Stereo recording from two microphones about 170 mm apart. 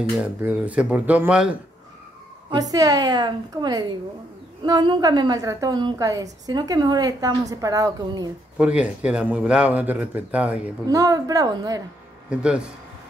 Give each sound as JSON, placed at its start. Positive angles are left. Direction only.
{"t": 0.2, "sound": "speech", "side_deg": -10}
{"t": 2.5, "sound": "a woman's voice", "side_deg": -20}
{"t": 8.5, "sound": "speech", "side_deg": -5}
{"t": 10.9, "sound": "a woman's voice", "side_deg": -20}
{"t": 12.3, "sound": "a man's voice", "side_deg": -5}